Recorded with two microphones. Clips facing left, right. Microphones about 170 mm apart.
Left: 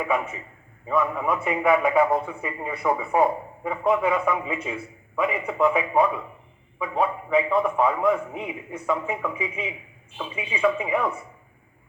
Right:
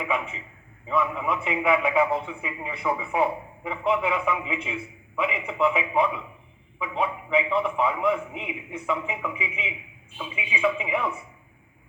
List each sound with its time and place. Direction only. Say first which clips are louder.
0.0 s a man's voice: left 3 dB; 50° left (ahead or behind)
6.8 s a man's voice: left 3 dB; 45° left (ahead or behind)
10.3 s speech: left 2 dB; 10° right (ahead or behind)
10.8 s a man's voice: left 3 dB; 45° left (ahead or behind)